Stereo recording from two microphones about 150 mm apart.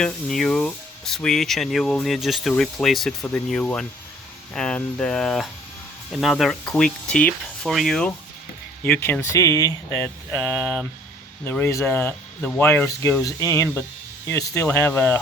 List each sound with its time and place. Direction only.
0.0 s speech: 5° left (ahead or behind)
8.8 s speech: 15° left (ahead or behind)
10.6 s speech: centre (ahead or behind)
11.6 s speech: 20° left (ahead or behind)